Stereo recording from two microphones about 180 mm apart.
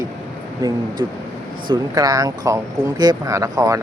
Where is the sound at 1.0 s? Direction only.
20° right (ahead or behind).